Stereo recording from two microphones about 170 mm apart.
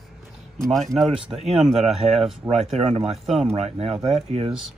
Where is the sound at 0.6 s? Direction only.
Centre (ahead or behind).